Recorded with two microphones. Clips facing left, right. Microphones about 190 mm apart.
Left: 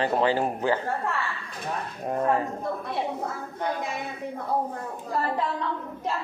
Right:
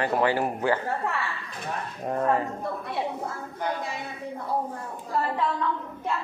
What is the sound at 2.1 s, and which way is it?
Speech, 15° left (ahead or behind).